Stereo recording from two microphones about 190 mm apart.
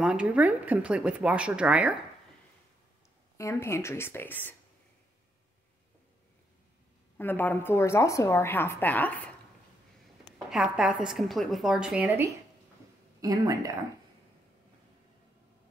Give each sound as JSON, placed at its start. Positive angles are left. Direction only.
{"t": 0.0, "sound": "speech", "side_deg": -5}
{"t": 3.3, "sound": "a woman's voice", "side_deg": 15}
{"t": 7.2, "sound": "a woman's voice", "side_deg": 10}
{"t": 10.5, "sound": "speech", "side_deg": -5}